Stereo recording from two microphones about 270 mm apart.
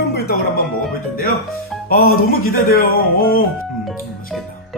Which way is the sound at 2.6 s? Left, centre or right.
Left.